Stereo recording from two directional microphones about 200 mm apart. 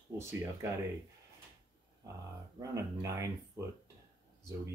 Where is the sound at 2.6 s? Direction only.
15° right (ahead or behind).